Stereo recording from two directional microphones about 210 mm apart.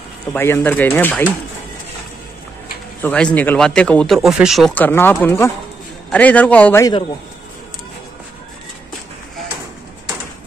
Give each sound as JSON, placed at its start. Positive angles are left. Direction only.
{"t": 0.3, "sound": "speech", "side_deg": 10}
{"t": 3.0, "sound": "speech", "side_deg": 5}